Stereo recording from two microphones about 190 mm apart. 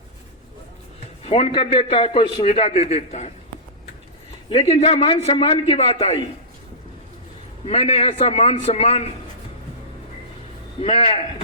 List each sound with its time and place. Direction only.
1.2 s a man's voice: 30° left (ahead or behind)
4.4 s a man's voice: 30° left (ahead or behind)
7.6 s a man's voice: 35° left (ahead or behind)
10.8 s a man's voice: 30° left (ahead or behind)